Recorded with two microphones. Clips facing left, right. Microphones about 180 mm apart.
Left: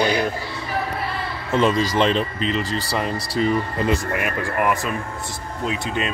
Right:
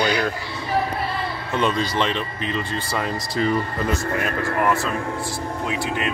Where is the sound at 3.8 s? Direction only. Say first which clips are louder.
Left 1 dB; 15° left (ahead or behind).